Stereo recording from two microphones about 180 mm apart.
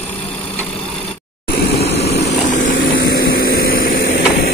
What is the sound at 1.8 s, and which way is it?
Vehicle, 35° left (ahead or behind).